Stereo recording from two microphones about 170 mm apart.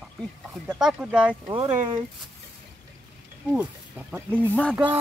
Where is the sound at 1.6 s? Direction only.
30° right (ahead or behind).